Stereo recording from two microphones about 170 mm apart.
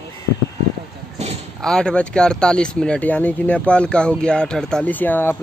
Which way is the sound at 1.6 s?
5° left (ahead or behind).